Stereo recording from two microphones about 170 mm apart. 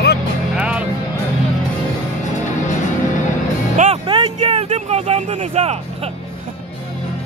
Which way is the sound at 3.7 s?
45° right (ahead or behind).